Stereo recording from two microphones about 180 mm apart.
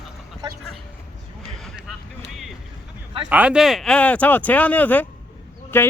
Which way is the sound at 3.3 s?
5° right (ahead or behind).